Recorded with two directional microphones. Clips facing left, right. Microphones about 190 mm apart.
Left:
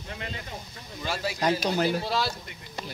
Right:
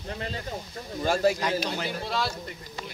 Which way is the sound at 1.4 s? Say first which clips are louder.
Left 4 dB; 40° left (ahead or behind).